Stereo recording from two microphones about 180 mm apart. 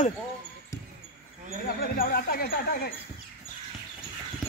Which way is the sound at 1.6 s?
55° left (ahead or behind).